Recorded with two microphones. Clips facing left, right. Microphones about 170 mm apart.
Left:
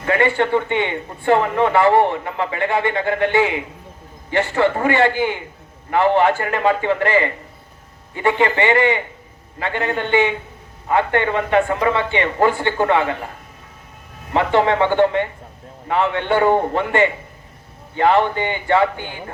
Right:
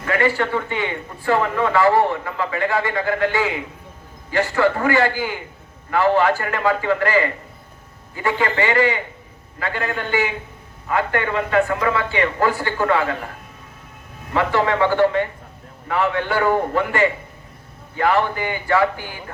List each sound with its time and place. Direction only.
0.0 s a man's voice: 25° left (ahead or behind)
14.3 s a man's voice: 25° left (ahead or behind)